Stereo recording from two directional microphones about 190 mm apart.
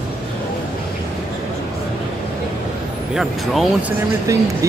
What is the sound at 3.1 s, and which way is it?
Speech, centre (ahead or behind).